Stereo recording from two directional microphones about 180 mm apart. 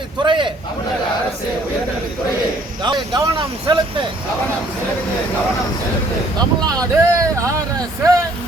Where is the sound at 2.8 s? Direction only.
25° right (ahead or behind).